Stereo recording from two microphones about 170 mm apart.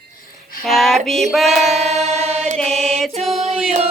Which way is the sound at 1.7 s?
40° right (ahead or behind).